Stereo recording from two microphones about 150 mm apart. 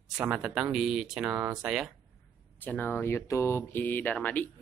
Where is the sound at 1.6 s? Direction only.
Centre (ahead or behind).